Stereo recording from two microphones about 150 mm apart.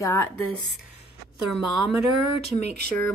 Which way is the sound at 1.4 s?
Centre (ahead or behind).